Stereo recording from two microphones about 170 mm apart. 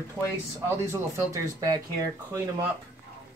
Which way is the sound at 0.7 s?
20° right (ahead or behind).